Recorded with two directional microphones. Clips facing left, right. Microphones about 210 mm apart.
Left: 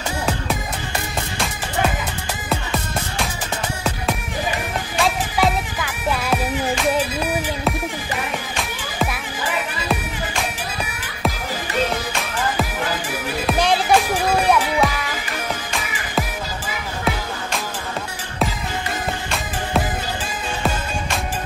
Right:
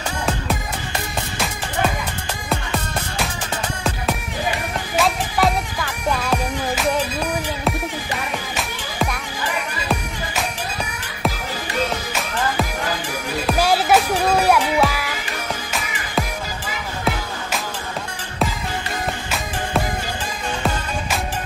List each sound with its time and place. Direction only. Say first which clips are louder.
4.9 s music: right 1 dB; centre (ahead or behind)
8.5 s music: even; 5° left (ahead or behind)
13.5 s music: right 1 dB; 5° right (ahead or behind)